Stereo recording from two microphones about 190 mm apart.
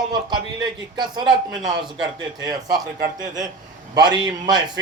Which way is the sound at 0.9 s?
25° right (ahead or behind).